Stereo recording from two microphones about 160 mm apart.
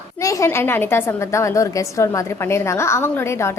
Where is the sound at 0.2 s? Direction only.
20° left (ahead or behind).